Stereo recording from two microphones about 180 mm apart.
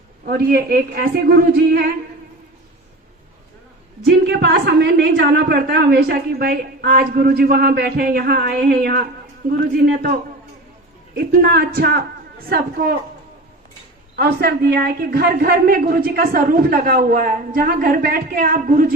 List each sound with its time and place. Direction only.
0.3 s a woman's voice: 60° right (ahead or behind)
4.2 s a woman's voice: 65° right (ahead or behind)
14.2 s a woman's voice: 60° right (ahead or behind)